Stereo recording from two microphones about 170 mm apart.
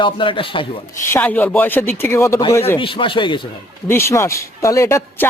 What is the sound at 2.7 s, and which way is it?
Speech, 30° left (ahead or behind).